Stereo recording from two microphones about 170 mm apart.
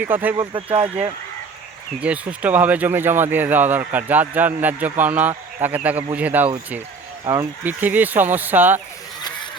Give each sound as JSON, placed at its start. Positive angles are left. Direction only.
{"t": 0.0, "sound": "speech", "side_deg": -10}
{"t": 0.3, "sound": "speech", "side_deg": -30}
{"t": 2.0, "sound": "speech", "side_deg": -10}